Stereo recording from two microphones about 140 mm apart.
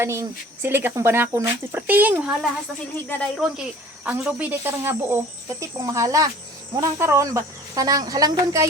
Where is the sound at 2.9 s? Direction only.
15° left (ahead or behind).